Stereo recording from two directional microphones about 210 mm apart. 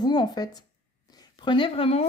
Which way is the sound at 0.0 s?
20° left (ahead or behind).